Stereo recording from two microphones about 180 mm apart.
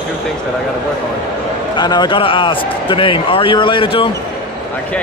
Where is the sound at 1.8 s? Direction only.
25° left (ahead or behind).